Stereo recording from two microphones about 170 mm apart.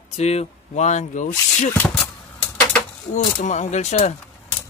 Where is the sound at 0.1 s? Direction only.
40° left (ahead or behind).